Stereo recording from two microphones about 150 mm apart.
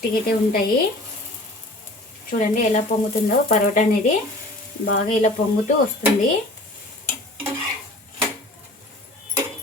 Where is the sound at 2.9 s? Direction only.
45° left (ahead or behind).